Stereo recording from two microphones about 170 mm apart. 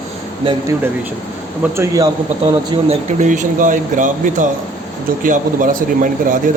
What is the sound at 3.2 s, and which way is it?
A man's voice, 50° right (ahead or behind).